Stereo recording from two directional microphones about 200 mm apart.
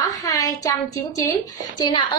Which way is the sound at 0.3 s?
15° left (ahead or behind).